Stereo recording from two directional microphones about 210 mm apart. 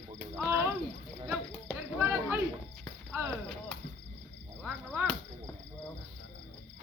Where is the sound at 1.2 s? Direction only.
10° right (ahead or behind).